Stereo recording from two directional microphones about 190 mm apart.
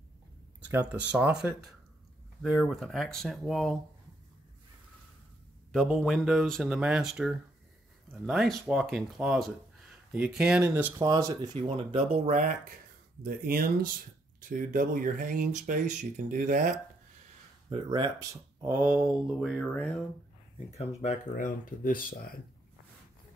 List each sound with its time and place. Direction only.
0.7 s speech: 10° right (ahead or behind)
5.7 s speech: centre (ahead or behind); by 11.3 s 15° right (ahead or behind)
11.5 s speech: 30° right (ahead or behind)
13.2 s speech: 50° right (ahead or behind)
17.6 s speech: 25° right (ahead or behind)
18.7 s speech: 10° right (ahead or behind)
20.5 s speech: 35° left (ahead or behind)